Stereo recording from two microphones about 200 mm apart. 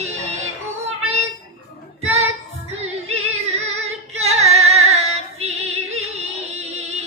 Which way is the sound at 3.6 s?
35° right (ahead or behind).